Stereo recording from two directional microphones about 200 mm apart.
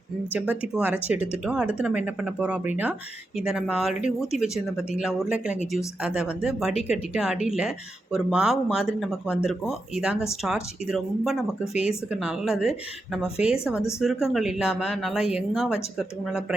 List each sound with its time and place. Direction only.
0.3 s speech: 5° right (ahead or behind)
11.7 s speech: 35° left (ahead or behind)
12.1 s speech: centre (ahead or behind)